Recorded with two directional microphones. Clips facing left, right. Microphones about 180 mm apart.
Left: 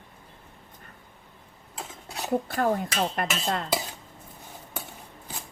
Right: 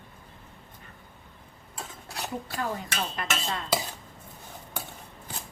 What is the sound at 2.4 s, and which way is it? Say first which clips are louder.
A woman's voice: left 7 dB; 55° left (ahead or behind).